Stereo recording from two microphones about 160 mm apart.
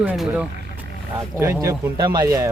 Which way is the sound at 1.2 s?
15° right (ahead or behind).